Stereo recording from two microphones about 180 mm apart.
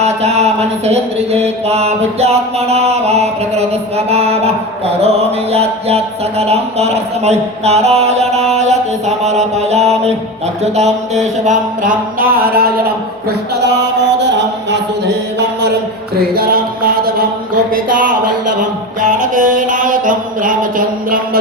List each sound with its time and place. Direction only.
0.0 s mantra: 35° right (ahead or behind)
10.6 s a sound: 40° right (ahead or behind)
13.2 s mantra: 65° right (ahead or behind)
14.2 s music: 80° right
16.3 s music: 55° right (ahead or behind)
17.7 s a sound: 50° right (ahead or behind)
18.6 s mantra: 45° right (ahead or behind)